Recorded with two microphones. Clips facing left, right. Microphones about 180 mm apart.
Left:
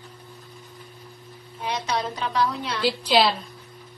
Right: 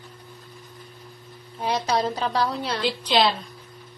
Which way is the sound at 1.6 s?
35° right (ahead or behind).